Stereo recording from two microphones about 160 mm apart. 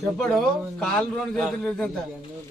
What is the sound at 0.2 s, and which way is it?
A man's voice, 5° left (ahead or behind).